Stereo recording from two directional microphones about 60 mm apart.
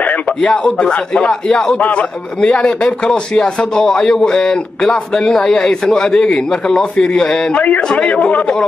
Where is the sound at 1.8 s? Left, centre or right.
Left.